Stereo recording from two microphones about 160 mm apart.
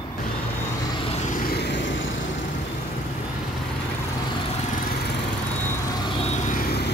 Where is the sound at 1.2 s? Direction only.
55° left (ahead or behind).